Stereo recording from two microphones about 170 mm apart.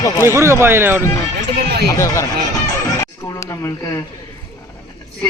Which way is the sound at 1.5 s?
70° right (ahead or behind).